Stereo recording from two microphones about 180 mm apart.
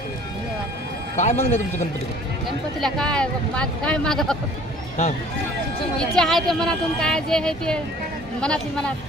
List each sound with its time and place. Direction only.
1.1 s speech: 40° left (ahead or behind)
2.8 s speech: 5° left (ahead or behind)
6.0 s speech: centre (ahead or behind)